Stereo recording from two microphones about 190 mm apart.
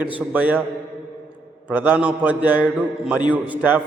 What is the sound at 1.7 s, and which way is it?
A man's voice, 10° right (ahead or behind).